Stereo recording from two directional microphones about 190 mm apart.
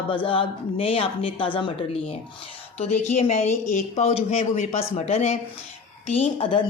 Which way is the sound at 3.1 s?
35° left (ahead or behind).